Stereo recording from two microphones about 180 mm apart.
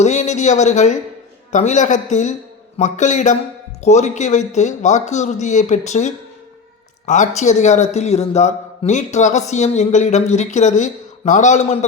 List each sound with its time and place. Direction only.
0.0 s a man's voice: 40° left (ahead or behind)